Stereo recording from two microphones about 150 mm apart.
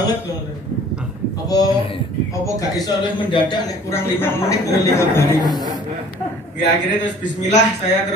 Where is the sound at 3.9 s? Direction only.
15° left (ahead or behind).